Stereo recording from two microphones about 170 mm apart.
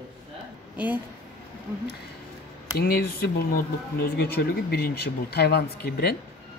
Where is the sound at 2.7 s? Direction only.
65° left (ahead or behind).